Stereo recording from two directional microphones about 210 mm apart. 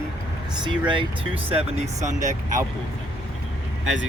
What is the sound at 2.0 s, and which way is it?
Speech, 35° right (ahead or behind).